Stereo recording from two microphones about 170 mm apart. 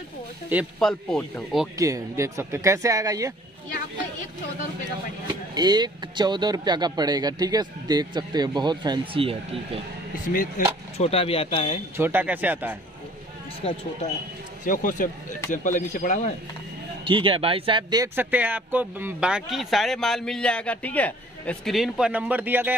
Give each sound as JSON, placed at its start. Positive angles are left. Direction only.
{"t": 0.7, "sound": "speech", "side_deg": 5}
{"t": 1.8, "sound": "speech", "side_deg": -20}
{"t": 5.3, "sound": "speech", "side_deg": -25}
{"t": 10.6, "sound": "speech", "side_deg": 50}
{"t": 11.0, "sound": "speech", "side_deg": 35}
{"t": 12.0, "sound": "speech", "side_deg": -10}
{"t": 13.6, "sound": "speech", "side_deg": 35}
{"t": 14.6, "sound": "speech", "side_deg": 50}
{"t": 17.0, "sound": "speech", "side_deg": -30}
{"t": 18.1, "sound": "speech", "side_deg": -10}